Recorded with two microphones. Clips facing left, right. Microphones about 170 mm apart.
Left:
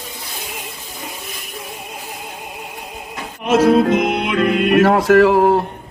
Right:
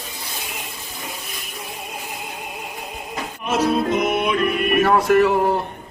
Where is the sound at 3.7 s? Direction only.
80° left.